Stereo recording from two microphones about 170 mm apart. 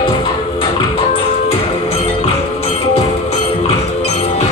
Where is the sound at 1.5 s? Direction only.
35° left (ahead or behind).